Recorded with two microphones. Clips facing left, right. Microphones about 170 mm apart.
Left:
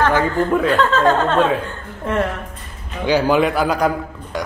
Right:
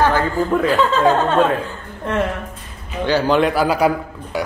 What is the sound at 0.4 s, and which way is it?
Speech, centre (ahead or behind).